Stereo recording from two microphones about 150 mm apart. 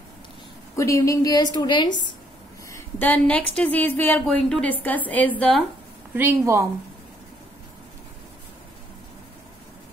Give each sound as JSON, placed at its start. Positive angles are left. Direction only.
{"t": 0.7, "sound": "a woman's voice", "side_deg": 20}
{"t": 2.7, "sound": "a woman's voice", "side_deg": 10}
{"t": 6.1, "sound": "a woman's voice", "side_deg": -15}